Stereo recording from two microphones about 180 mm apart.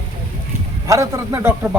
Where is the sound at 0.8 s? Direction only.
15° right (ahead or behind).